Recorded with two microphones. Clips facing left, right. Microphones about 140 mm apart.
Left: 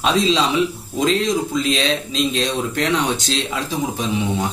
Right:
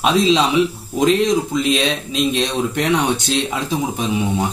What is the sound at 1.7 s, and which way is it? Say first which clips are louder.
Speech: right 1 dB; 10° right (ahead or behind).